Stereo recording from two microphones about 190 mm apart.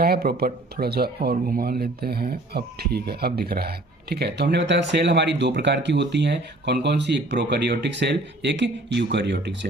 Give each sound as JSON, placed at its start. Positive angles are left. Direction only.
{"t": 0.0, "sound": "speech", "side_deg": -50}